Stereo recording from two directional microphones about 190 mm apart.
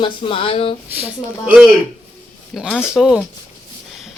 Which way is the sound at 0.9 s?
10° right (ahead or behind).